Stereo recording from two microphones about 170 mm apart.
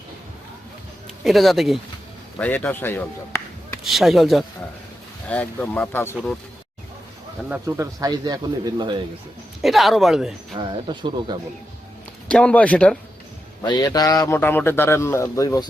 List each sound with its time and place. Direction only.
1.2 s speech: centre (ahead or behind)
3.8 s a man's voice: centre (ahead or behind)
7.5 s speech: 20° right (ahead or behind)
9.6 s speech: centre (ahead or behind)
10.6 s speech: 25° right (ahead or behind)
12.3 s a man's voice: 5° left (ahead or behind)
13.6 s a man's voice: 25° left (ahead or behind)